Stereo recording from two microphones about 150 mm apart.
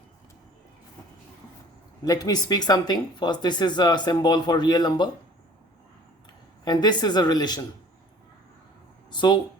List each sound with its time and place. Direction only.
2.0 s speech: 25° left (ahead or behind)
6.7 s speech: 30° left (ahead or behind)
9.0 s speech: 30° left (ahead or behind)